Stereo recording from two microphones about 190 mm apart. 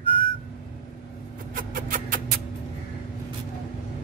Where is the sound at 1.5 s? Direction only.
45° right (ahead or behind).